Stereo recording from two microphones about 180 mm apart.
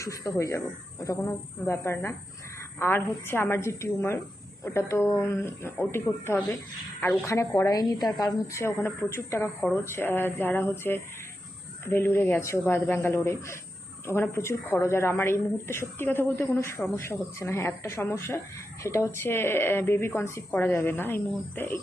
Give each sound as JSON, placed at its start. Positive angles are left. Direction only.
{"t": 0.0, "sound": "a woman's voice", "side_deg": 15}